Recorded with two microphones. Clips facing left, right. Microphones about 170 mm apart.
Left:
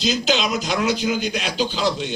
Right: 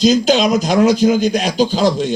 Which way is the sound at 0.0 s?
45° right (ahead or behind).